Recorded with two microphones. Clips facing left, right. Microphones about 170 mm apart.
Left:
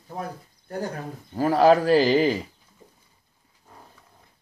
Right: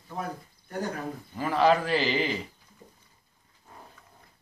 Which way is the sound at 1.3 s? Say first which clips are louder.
Left 6 dB; 40° left (ahead or behind).